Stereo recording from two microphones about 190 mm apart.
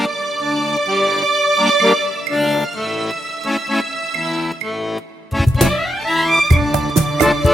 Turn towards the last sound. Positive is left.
turn(degrees=0)  # may be behind; listen again after turning